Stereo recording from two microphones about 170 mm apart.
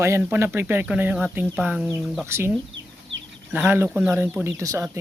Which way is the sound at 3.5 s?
10° right (ahead or behind).